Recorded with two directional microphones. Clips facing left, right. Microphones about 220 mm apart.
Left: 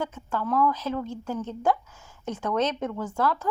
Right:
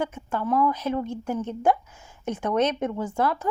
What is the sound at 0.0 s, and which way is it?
Speech, 15° right (ahead or behind).